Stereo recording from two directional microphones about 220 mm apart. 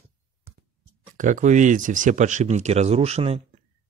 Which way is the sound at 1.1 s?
35° right (ahead or behind).